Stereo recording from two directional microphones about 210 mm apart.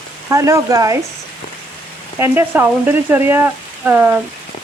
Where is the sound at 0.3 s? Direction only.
15° right (ahead or behind).